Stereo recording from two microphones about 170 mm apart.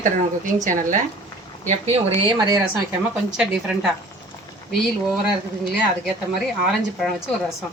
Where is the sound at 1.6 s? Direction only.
40° right (ahead or behind).